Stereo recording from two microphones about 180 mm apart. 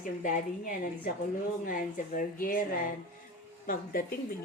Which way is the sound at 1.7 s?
50° left (ahead or behind).